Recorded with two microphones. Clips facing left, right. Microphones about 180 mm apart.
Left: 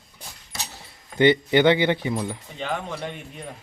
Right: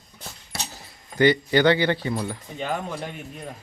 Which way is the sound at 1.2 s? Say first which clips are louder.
Left 1 dB; 20° left (ahead or behind).